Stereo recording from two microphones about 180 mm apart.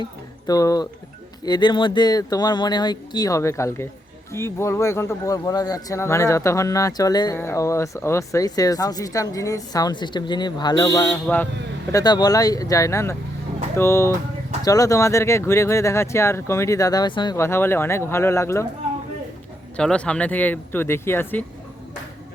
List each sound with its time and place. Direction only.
0.0 s speech: 20° left (ahead or behind)
11.1 s speech: 10° left (ahead or behind)
11.9 s speech: 20° left (ahead or behind)
19.7 s speech: 5° left (ahead or behind)